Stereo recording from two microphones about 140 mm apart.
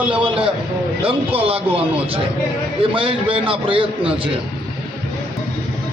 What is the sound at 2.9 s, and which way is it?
A man's voice, 40° right (ahead or behind).